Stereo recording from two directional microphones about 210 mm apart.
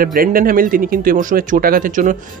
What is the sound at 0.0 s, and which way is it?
Speech, 45° right (ahead or behind).